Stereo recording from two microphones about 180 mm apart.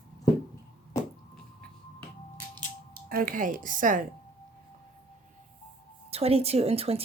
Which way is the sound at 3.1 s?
50° right (ahead or behind).